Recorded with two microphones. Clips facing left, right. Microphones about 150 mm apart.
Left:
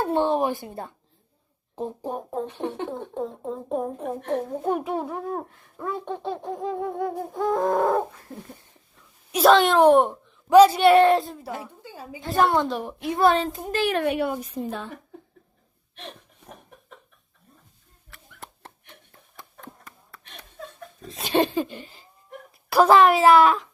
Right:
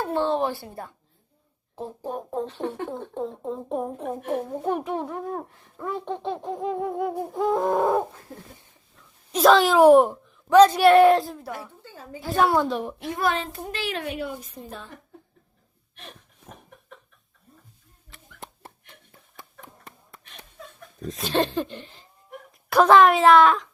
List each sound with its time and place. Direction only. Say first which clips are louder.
0.0 s a sound: left 2 dB; 20° left (ahead or behind)
1.7 s speech: left 2 dB; 15° left (ahead or behind)
3.2 s speech: right 1 dB; centre (ahead or behind)
6.3 s a sound: right 1 dB; 5° right (ahead or behind)
8.3 s speech: left 3 dB; centre (ahead or behind)
11.5 s a woman's voice: left 2 dB; 15° left (ahead or behind)
12.2 s speech: even; centre (ahead or behind)
13.1 s a child's voice: left 6 dB; 35° left (ahead or behind)
13.7 s a woman's voice: left 9 dB; 50° left (ahead or behind); by 14.9 s 70° left (ahead or behind)
18.1 s dog: right 1 dB; 20° right (ahead or behind)
21.2 s speech: left 2 dB; 15° left (ahead or behind)